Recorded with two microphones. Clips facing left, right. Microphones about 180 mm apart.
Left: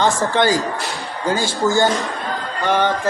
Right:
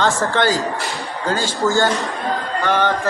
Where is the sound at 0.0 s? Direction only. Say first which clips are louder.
Left 1 dB; 15° left (ahead or behind).